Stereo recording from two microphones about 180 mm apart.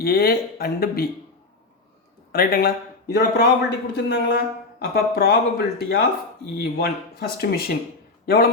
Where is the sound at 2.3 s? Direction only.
55° left (ahead or behind).